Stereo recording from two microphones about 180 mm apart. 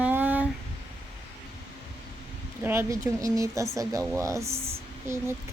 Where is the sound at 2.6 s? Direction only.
15° right (ahead or behind).